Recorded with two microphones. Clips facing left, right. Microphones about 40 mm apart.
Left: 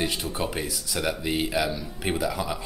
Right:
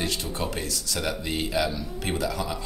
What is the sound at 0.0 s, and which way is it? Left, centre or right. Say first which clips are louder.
Speech: left 1 dB; centre.